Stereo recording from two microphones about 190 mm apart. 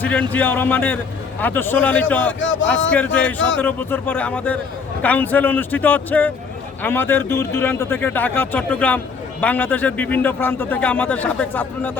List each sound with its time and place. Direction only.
0.0 s a man's voice: 10° left (ahead or behind)
2.4 s a man's voice: 85° left
2.9 s a man's voice: 5° left (ahead or behind)